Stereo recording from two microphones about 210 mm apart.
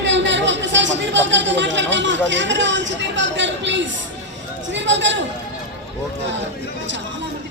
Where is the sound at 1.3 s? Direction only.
60° right (ahead or behind).